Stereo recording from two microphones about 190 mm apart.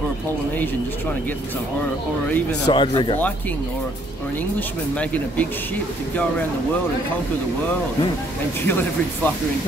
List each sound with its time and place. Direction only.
2.6 s speech: 25° left (ahead or behind)
4.6 s speech: 10° left (ahead or behind)
8.6 s speech: 10° left (ahead or behind)